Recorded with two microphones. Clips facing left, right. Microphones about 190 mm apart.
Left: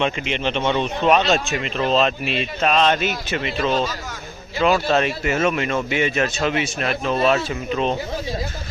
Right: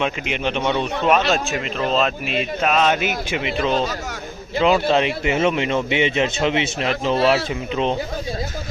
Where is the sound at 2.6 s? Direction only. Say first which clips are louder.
Left 1 dB; 5° right (ahead or behind).